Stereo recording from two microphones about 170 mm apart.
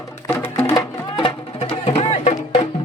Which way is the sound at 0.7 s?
25° left (ahead or behind).